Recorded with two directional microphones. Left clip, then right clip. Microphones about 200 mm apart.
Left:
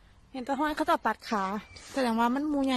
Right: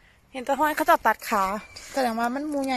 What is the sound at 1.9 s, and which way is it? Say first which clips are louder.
Speech: right 2 dB; 15° left (ahead or behind).